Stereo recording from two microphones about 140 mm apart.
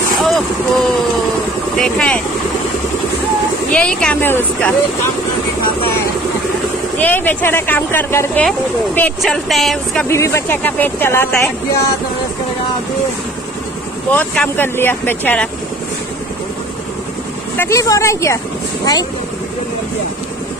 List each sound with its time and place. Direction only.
0.2 s speech: centre (ahead or behind)
3.7 s speech: 10° left (ahead or behind)
7.0 s speech: 15° left (ahead or behind)
9.2 s speech: centre (ahead or behind)
10.0 s speech: 20° left (ahead or behind)
14.1 s speech: 10° left (ahead or behind)
17.6 s speech: 20° left (ahead or behind)